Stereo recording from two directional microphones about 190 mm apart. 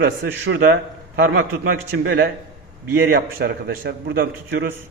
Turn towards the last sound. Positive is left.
turn(degrees=-60)  # may be behind; listen again after turning